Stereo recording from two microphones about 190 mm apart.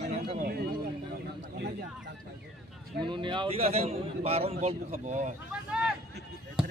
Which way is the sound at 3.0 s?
25° right (ahead or behind).